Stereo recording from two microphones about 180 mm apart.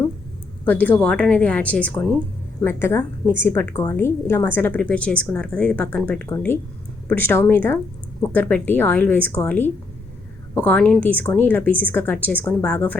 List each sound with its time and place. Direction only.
0.6 s a woman's voice: 10° left (ahead or behind)